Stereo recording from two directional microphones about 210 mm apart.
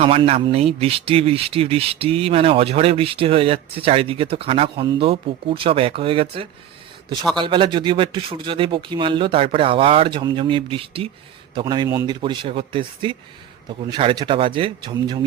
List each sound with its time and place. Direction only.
0.0 s speech: 30° right (ahead or behind)